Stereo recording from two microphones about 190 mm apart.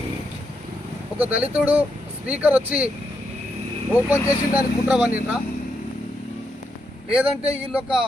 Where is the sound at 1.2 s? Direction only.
10° right (ahead or behind).